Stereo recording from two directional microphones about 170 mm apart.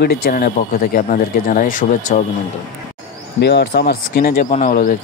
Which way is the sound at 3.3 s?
80° left.